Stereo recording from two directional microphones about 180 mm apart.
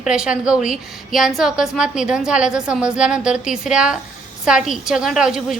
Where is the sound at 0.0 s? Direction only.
5° right (ahead or behind).